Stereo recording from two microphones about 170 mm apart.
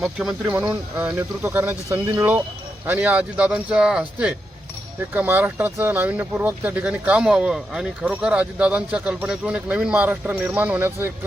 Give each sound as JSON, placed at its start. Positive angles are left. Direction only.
{"t": 0.0, "sound": "speech", "side_deg": -5}
{"t": 0.5, "sound": "speech", "side_deg": -20}
{"t": 0.9, "sound": "speech", "side_deg": -10}